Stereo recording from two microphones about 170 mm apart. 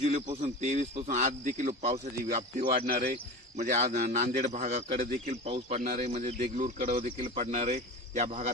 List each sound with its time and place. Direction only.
0.6 s speech: 50° right (ahead or behind)
2.8 s speech: 65° right (ahead or behind)
3.6 s speech: 45° right (ahead or behind)
5.8 s speech: 55° right (ahead or behind)
6.1 s speech: 40° right (ahead or behind)